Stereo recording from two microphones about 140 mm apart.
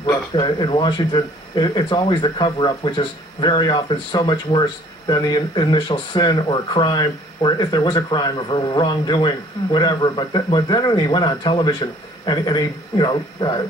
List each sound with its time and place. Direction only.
0.4 s a man's voice: 35° left (ahead or behind)